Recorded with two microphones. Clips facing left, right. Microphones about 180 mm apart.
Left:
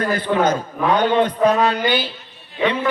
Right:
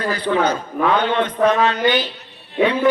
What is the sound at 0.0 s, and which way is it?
A man's voice, 50° left (ahead or behind).